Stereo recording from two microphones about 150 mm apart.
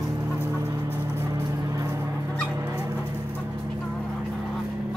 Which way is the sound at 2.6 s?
20° right (ahead or behind).